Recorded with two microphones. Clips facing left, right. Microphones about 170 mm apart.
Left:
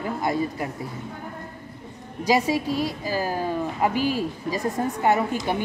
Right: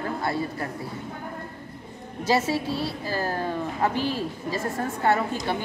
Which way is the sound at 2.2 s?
15° left (ahead or behind).